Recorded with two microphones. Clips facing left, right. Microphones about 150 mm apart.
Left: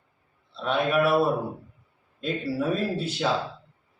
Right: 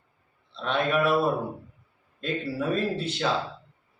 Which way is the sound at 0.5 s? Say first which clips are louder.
Left 2 dB; 5° left (ahead or behind).